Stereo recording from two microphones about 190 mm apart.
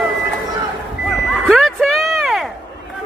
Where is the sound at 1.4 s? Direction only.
Centre (ahead or behind).